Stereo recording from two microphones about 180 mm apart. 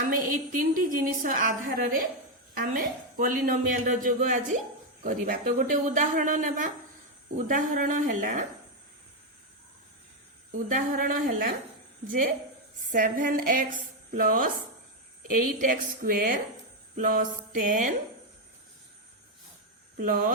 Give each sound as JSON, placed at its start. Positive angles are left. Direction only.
{"t": 0.6, "sound": "a woman's voice", "side_deg": -50}
{"t": 10.8, "sound": "a woman's voice", "side_deg": -50}
{"t": 12.9, "sound": "a woman's voice", "side_deg": -45}
{"t": 20.0, "sound": "a woman's voice", "side_deg": -50}